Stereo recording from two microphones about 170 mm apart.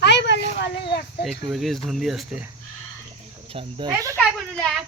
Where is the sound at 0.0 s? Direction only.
90° left.